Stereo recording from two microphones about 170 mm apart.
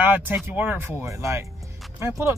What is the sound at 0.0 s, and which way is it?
Speech, 10° right (ahead or behind).